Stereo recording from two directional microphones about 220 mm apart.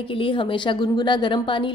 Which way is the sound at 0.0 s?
25° left (ahead or behind).